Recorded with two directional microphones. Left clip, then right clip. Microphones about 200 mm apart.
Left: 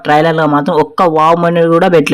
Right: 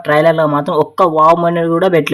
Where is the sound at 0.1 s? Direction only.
25° left (ahead or behind).